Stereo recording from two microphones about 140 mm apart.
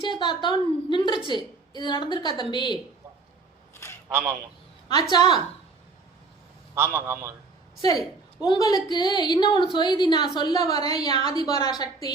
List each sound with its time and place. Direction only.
0.0 s a woman's voice: 35° left (ahead or behind)
4.1 s a man's voice: 15° right (ahead or behind)
5.1 s a woman's voice: 30° left (ahead or behind)
6.7 s a man's voice: 15° right (ahead or behind)
7.8 s a woman's voice: 25° left (ahead or behind)